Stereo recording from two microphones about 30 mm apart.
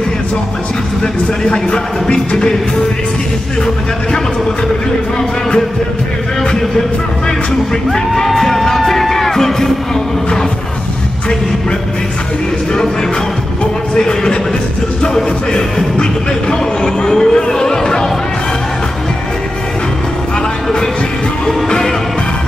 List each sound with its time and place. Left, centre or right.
1.0 s speech: left
8.4 s music: centre
13.9 s speech: left
15.5 s speech: left
17.1 s a sound: centre
17.5 s speech: centre
21.6 s speech: left